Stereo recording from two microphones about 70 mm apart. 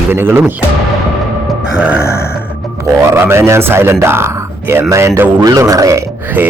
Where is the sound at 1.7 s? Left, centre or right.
Centre.